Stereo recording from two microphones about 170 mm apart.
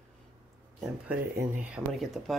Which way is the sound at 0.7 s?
5° right (ahead or behind).